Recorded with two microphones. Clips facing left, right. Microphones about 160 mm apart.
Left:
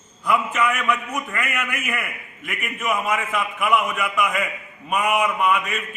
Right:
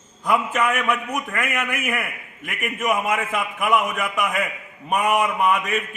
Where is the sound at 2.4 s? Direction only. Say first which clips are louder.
Right 3 dB; 45° right (ahead or behind).